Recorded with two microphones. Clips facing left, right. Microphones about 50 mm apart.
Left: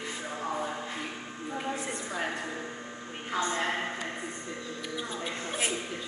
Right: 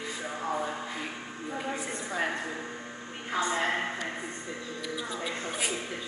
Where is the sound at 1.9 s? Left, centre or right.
Centre.